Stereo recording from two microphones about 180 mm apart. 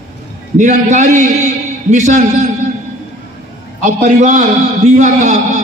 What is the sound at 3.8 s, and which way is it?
A man's voice, 45° right (ahead or behind).